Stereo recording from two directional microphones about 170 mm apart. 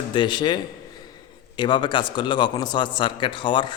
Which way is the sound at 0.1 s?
25° left (ahead or behind).